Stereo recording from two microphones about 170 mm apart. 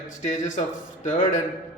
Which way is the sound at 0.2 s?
45° left (ahead or behind).